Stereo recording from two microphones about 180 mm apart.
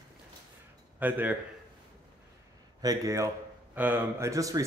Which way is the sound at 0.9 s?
10° right (ahead or behind).